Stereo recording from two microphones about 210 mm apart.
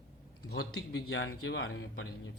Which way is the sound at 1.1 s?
60° left (ahead or behind).